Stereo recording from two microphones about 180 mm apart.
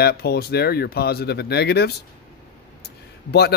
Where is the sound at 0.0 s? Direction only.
60° left (ahead or behind).